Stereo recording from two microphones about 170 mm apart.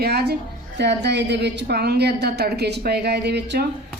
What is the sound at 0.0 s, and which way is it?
A woman's voice, 70° right (ahead or behind).